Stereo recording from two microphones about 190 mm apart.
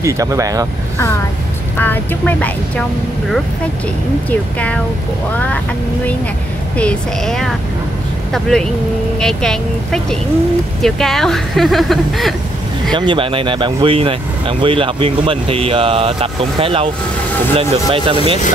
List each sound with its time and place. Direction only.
0.0 s speech: 15° right (ahead or behind)
1.8 s speech: 10° left (ahead or behind)
4.3 s speech: 5° left (ahead or behind)
6.8 s speech: 5° left (ahead or behind)
12.9 s speech: 25° right (ahead or behind)